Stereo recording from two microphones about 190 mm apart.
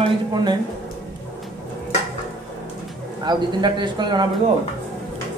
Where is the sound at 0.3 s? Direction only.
20° right (ahead or behind).